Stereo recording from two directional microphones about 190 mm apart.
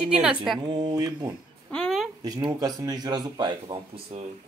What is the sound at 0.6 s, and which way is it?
Speech, 25° right (ahead or behind).